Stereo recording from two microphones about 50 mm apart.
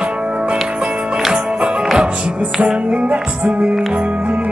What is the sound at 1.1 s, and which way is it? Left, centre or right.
Music, centre.